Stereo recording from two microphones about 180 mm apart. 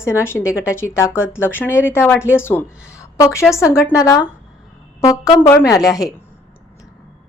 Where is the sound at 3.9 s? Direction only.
20° left (ahead or behind).